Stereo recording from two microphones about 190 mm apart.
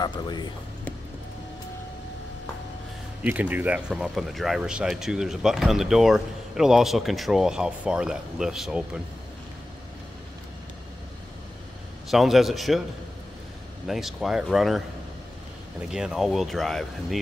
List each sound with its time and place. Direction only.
0.0 s speech: 20° left (ahead or behind)
3.3 s speech: 10° right (ahead or behind)
12.1 s speech: centre (ahead or behind)
13.8 s speech: centre (ahead or behind)
15.9 s speech: 5° right (ahead or behind)